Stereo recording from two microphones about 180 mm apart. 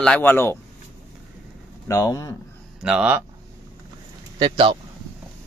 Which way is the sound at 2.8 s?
5° right (ahead or behind).